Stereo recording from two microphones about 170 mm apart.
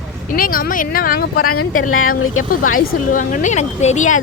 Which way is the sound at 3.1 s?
45° left (ahead or behind).